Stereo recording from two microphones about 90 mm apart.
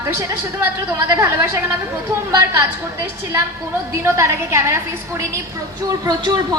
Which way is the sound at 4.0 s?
30° right (ahead or behind).